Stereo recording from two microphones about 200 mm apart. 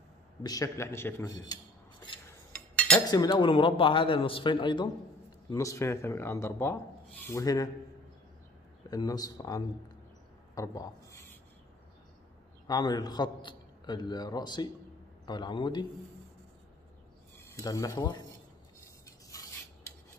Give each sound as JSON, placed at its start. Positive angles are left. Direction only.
{"t": 0.4, "sound": "speech", "side_deg": 20}
{"t": 3.1, "sound": "a man's voice", "side_deg": 20}
{"t": 8.9, "sound": "a man's voice", "side_deg": 20}
{"t": 12.6, "sound": "a man's voice", "side_deg": 20}
{"t": 17.5, "sound": "speech", "side_deg": 15}